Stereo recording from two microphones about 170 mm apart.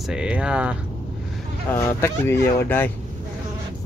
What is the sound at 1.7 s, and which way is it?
Speech, 15° left (ahead or behind).